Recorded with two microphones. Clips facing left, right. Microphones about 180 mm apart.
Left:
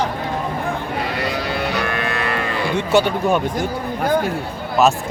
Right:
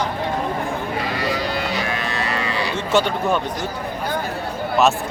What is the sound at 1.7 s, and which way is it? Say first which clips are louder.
Sheep: left 2 dB; 60° left (ahead or behind).